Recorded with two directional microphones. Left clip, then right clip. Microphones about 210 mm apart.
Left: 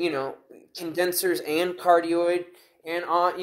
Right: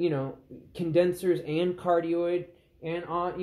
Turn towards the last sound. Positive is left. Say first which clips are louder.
# left 7 dB
turn(degrees=40)  # may be behind; listen again after turning